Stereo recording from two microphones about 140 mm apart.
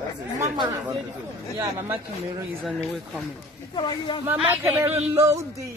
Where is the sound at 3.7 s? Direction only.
35° left (ahead or behind).